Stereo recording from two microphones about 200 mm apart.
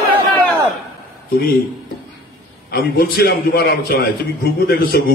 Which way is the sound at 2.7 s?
50° left (ahead or behind).